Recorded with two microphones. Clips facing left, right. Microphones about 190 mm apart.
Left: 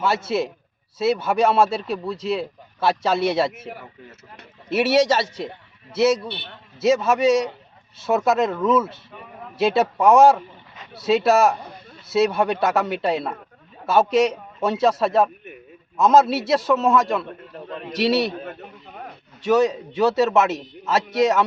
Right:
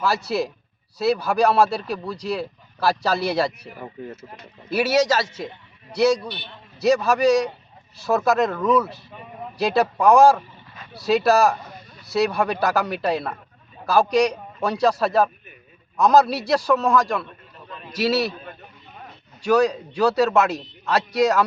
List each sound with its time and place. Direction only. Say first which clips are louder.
0.0 s speech: left 1 dB; centre (ahead or behind)
4.7 s speech: left 2 dB; centre (ahead or behind)
17.2 s a sound: left 7 dB; 60° left (ahead or behind)
17.9 s speech: left 1 dB; centre (ahead or behind)
18.3 s a sound: left 6 dB; 60° left (ahead or behind)
19.4 s speech: even; centre (ahead or behind)